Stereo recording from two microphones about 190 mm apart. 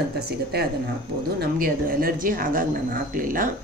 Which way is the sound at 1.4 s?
50° right (ahead or behind).